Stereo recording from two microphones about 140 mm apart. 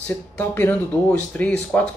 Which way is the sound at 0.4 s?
15° left (ahead or behind).